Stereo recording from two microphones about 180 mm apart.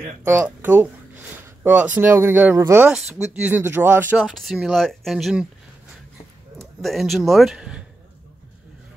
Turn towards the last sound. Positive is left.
turn(degrees=-5)  # may be behind; listen again after turning